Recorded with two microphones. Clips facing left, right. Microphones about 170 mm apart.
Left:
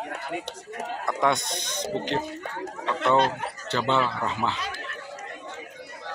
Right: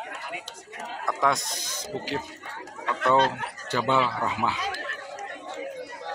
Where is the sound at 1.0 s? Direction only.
Centre (ahead or behind).